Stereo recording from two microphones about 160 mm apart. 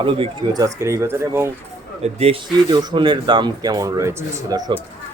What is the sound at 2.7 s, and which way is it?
A man's voice, 25° right (ahead or behind).